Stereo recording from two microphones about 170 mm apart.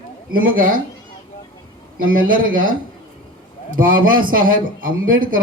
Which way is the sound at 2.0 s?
55° right (ahead or behind).